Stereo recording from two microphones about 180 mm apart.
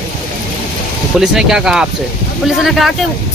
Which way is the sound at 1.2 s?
5° right (ahead or behind).